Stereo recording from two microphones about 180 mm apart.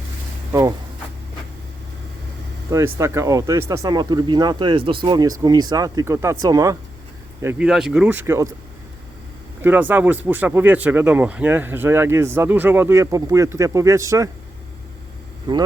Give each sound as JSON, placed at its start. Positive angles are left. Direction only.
{"t": 2.6, "sound": "speech", "side_deg": -15}
{"t": 7.4, "sound": "speech", "side_deg": -5}
{"t": 9.6, "sound": "speech", "side_deg": -10}